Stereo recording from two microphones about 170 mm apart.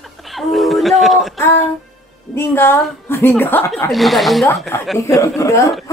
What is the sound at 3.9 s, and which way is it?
Speech, centre (ahead or behind).